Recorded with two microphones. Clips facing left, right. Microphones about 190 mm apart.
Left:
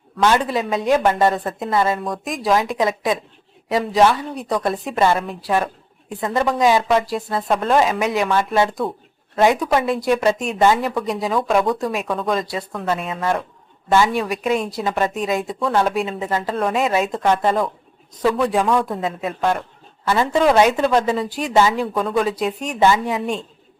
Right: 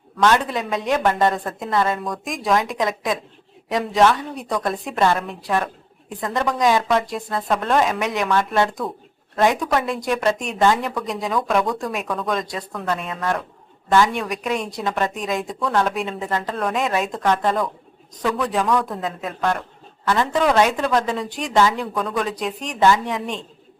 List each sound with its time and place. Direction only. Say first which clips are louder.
0.2 s a woman's voice: left 1 dB; 5° left (ahead or behind)
18.6 s a man's voice: left 2 dB; 25° left (ahead or behind)
18.9 s a woman's voice: left 3 dB; 5° left (ahead or behind)